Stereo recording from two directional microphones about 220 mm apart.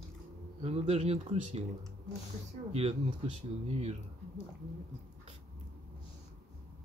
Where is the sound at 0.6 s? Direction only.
30° right (ahead or behind).